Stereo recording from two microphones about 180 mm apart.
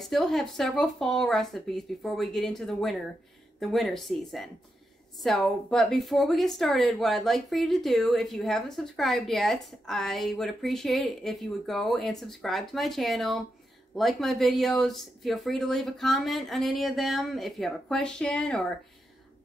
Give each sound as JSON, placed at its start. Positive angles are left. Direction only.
{"t": 0.0, "sound": "speech", "side_deg": 0}